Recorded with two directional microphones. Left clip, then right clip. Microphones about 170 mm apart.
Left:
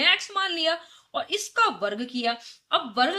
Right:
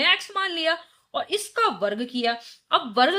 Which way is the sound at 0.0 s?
25° right (ahead or behind).